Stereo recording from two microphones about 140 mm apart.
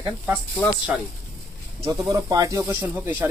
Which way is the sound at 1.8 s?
25° right (ahead or behind).